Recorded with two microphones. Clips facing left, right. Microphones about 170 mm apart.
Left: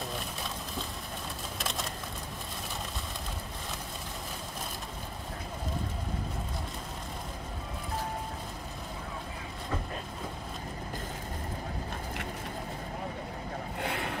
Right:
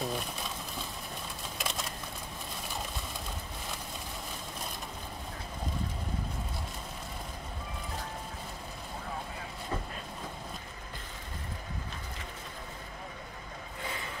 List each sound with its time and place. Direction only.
13.7 s vehicle: 65° left (ahead or behind)